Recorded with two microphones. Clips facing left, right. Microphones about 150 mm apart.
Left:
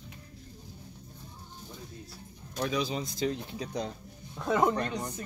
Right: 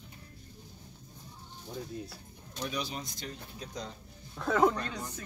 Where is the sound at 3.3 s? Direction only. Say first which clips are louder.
Left 8 dB; 80° left.